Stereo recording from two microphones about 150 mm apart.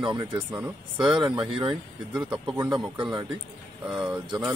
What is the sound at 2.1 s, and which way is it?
Speech, 5° right (ahead or behind).